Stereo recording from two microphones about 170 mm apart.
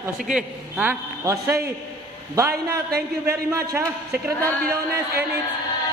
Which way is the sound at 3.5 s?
15° right (ahead or behind).